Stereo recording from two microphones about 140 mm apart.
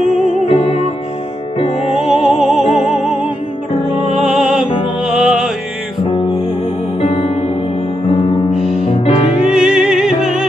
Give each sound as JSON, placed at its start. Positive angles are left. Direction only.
{"t": 0.5, "sound": "music", "side_deg": 50}
{"t": 2.0, "sound": "music", "side_deg": -5}
{"t": 7.0, "sound": "music", "side_deg": 45}
{"t": 8.5, "sound": "music", "side_deg": -5}
{"t": 8.8, "sound": "music", "side_deg": 45}
{"t": 9.5, "sound": "music", "side_deg": -5}